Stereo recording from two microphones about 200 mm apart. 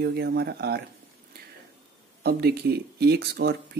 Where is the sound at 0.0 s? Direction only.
55° right (ahead or behind).